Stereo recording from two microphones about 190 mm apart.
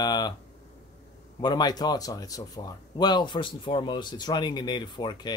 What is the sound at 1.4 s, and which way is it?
Speech, 20° left (ahead or behind).